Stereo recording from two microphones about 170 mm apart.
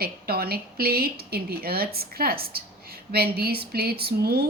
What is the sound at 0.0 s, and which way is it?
A woman's voice, 65° right (ahead or behind).